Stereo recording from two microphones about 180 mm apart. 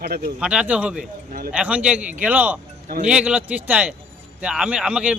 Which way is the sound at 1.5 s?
5° right (ahead or behind).